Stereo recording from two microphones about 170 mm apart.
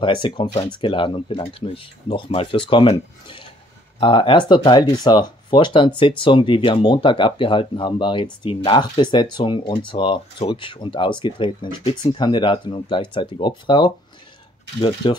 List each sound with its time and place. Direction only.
0.0 s speech: 30° left (ahead or behind)
15.0 s speech: 30° left (ahead or behind)